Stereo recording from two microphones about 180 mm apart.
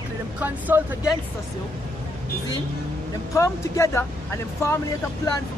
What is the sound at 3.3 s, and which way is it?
Speech, 15° left (ahead or behind).